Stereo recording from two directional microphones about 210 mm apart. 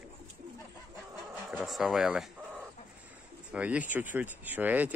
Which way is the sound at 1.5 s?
Centre (ahead or behind).